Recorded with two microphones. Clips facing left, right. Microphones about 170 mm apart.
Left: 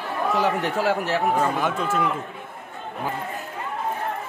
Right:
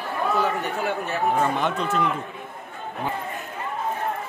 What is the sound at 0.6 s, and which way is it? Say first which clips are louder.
Speech: left 4 dB; 90° left.